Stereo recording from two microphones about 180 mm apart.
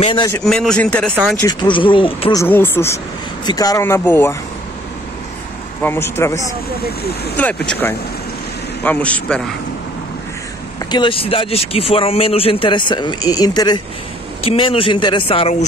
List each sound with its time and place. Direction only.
0.0 s speech: 25° left (ahead or behind)
0.4 s a man's voice: 5° left (ahead or behind)
1.4 s speech: 25° left (ahead or behind)
2.4 s speech: 10° left (ahead or behind)
5.8 s speech: 15° left (ahead or behind)
10.9 s speech: 30° left (ahead or behind)
14.4 s speech: 35° left (ahead or behind)